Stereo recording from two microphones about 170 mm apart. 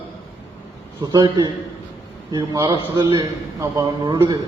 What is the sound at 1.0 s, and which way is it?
A man's voice, 25° right (ahead or behind).